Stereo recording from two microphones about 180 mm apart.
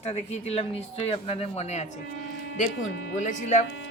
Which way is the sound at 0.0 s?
35° left (ahead or behind).